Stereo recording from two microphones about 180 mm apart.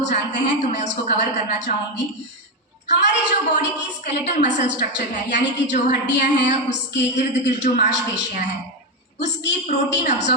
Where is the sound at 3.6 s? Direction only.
75° left (ahead or behind).